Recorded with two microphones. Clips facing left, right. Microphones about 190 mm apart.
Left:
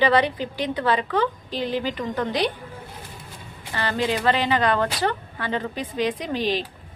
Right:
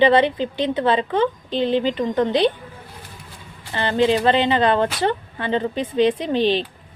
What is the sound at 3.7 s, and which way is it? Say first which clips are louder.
Speech: right 6 dB; 25° right (ahead or behind).